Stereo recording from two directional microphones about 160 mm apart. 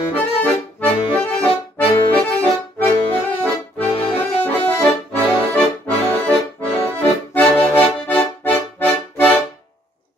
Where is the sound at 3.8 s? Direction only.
40° left (ahead or behind).